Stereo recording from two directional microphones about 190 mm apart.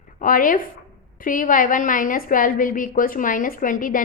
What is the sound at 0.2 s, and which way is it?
A woman's voice, 45° left (ahead or behind).